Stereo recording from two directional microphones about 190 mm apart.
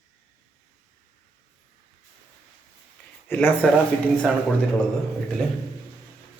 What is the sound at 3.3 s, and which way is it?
Speech, 10° left (ahead or behind).